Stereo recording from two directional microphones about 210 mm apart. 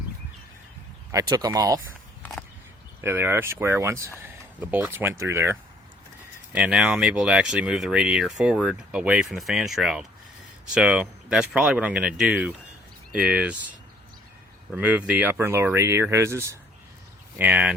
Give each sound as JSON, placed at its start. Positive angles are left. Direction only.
{"t": 1.1, "sound": "speech", "side_deg": -15}
{"t": 3.0, "sound": "speech", "side_deg": -10}
{"t": 14.7, "sound": "speech", "side_deg": -5}